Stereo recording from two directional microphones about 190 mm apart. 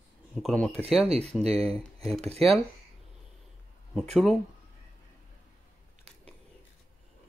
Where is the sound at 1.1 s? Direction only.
35° right (ahead or behind).